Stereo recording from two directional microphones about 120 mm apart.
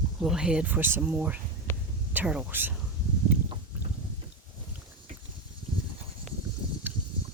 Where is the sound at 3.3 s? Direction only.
15° right (ahead or behind).